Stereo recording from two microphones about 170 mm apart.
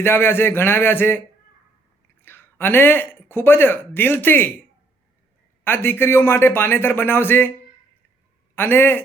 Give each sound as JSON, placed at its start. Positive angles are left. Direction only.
{"t": 0.0, "sound": "speech", "side_deg": 15}
{"t": 2.2, "sound": "speech", "side_deg": 10}
{"t": 5.6, "sound": "speech", "side_deg": 15}
{"t": 8.5, "sound": "speech", "side_deg": 15}